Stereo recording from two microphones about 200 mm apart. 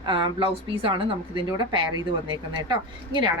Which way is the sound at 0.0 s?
25° right (ahead or behind).